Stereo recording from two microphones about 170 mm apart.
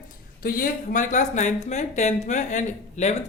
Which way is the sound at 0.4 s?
55° left (ahead or behind).